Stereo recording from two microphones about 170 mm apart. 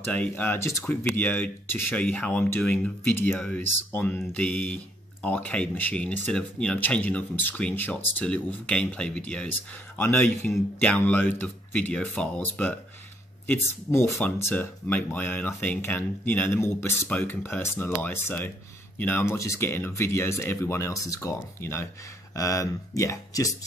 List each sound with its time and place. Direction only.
0.0 s speech: 10° left (ahead or behind)